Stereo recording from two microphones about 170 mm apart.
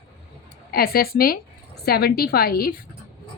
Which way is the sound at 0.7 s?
60° left (ahead or behind).